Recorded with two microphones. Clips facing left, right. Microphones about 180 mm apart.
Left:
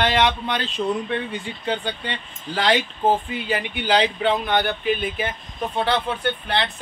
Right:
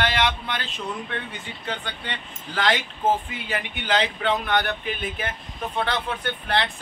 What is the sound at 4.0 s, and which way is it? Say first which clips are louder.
Speech: left 3 dB; 25° left (ahead or behind).